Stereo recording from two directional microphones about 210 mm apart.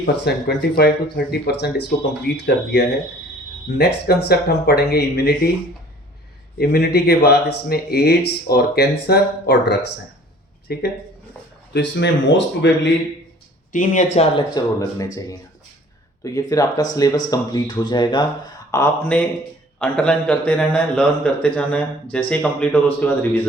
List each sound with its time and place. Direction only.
0.0 s speech: 50° left (ahead or behind)
3.8 s speech: 50° left (ahead or behind)
6.6 s speech: 50° left (ahead or behind)
11.7 s speech: 60° left (ahead or behind)
13.7 s speech: 35° left (ahead or behind)
14.3 s a man's voice: 20° left (ahead or behind)